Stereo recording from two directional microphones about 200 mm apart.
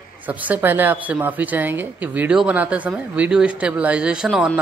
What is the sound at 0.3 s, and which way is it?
A man's voice, 10° right (ahead or behind).